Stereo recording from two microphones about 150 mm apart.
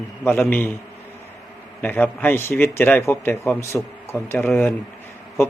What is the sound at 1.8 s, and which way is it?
A man's voice, 10° left (ahead or behind).